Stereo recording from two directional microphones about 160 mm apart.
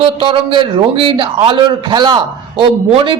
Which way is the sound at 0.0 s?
35° right (ahead or behind).